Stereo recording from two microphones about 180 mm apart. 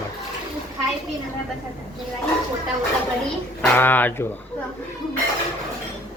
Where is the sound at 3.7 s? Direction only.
10° left (ahead or behind).